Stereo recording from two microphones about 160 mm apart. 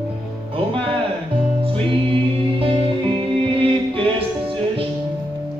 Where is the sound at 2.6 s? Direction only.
35° right (ahead or behind).